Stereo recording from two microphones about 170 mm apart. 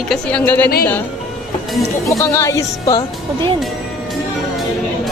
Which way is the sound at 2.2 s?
15° left (ahead or behind).